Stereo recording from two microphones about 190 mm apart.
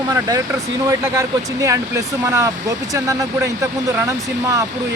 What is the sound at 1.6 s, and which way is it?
Speech, 15° right (ahead or behind).